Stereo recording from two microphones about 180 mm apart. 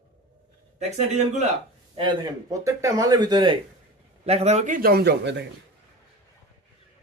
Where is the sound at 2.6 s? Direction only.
15° right (ahead or behind).